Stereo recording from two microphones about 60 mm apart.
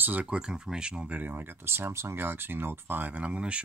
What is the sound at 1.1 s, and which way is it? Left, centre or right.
Speech, right.